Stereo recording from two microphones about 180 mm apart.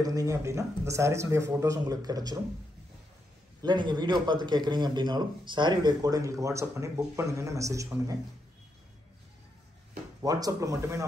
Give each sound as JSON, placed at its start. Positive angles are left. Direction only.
{"t": 0.0, "sound": "speech", "side_deg": -20}
{"t": 3.6, "sound": "a man's voice", "side_deg": -25}
{"t": 10.2, "sound": "speech", "side_deg": -20}